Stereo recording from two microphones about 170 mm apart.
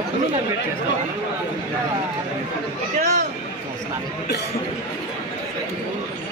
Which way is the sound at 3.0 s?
45° right (ahead or behind).